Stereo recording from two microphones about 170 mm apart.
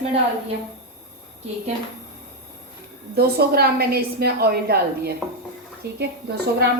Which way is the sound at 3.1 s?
65° right (ahead or behind).